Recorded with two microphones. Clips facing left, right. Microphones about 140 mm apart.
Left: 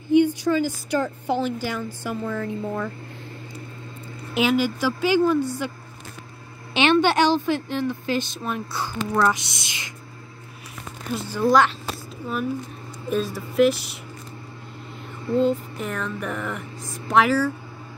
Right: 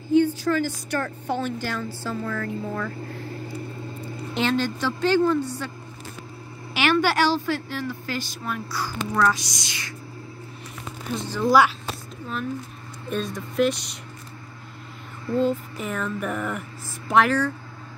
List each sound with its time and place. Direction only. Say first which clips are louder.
0.1 s a woman's voice: left 2 dB; 15° left (ahead or behind)
4.3 s a woman's voice: left 3 dB; 10° left (ahead or behind)
6.7 s a woman's voice: left 3 dB; 25° left (ahead or behind)
11.1 s a woman's voice: left 2 dB; 10° left (ahead or behind)
13.1 s a sound: left 3 dB; 5° left (ahead or behind)
15.3 s a sound: left 2 dB; centre (ahead or behind)